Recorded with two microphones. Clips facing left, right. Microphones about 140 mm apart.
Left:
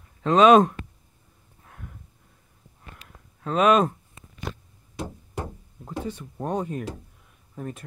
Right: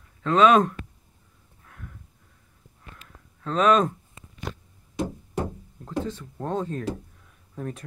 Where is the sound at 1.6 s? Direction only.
25° left (ahead or behind).